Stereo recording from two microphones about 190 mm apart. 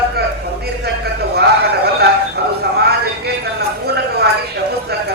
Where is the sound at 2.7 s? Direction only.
60° right (ahead or behind).